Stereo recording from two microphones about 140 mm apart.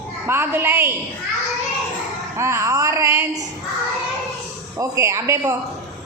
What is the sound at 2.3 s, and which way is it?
Speech, 20° right (ahead or behind).